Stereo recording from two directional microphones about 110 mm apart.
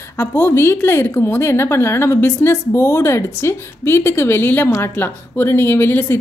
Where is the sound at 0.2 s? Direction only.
20° left (ahead or behind).